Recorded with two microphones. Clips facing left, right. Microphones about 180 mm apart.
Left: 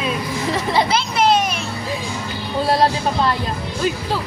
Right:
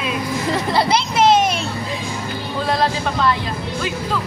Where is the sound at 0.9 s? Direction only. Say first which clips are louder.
Right 2 dB; 25° right (ahead or behind).